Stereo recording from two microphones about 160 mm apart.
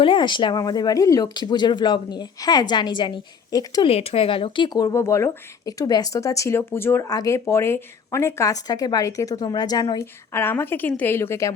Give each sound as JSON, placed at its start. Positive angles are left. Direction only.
{"t": 0.0, "sound": "speech", "side_deg": 30}
{"t": 3.8, "sound": "speech", "side_deg": 40}